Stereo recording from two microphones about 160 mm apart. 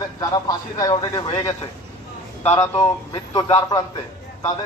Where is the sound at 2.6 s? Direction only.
20° left (ahead or behind).